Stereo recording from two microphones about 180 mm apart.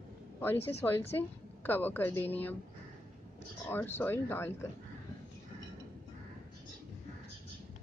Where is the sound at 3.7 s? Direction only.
10° left (ahead or behind).